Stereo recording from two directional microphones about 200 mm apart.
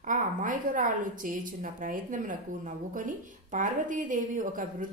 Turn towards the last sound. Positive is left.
turn(degrees=-40)  # may be behind; listen again after turning